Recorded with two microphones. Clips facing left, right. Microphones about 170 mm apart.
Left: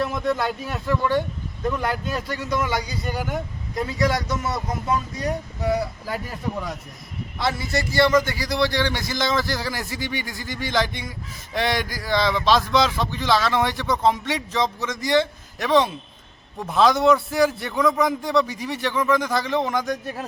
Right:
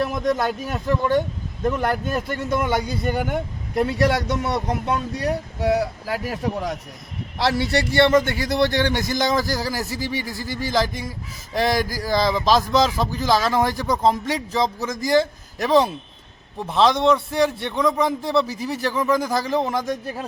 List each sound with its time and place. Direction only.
0.2 s a man's voice: 45° right (ahead or behind); by 8.0 s 65° right (ahead or behind)
8.1 s a man's voice: 55° right (ahead or behind); by 15.9 s 35° right (ahead or behind)
16.6 s a man's voice: centre (ahead or behind)
18.6 s a man's voice: 35° right (ahead or behind)
19.8 s a man's voice: centre (ahead or behind)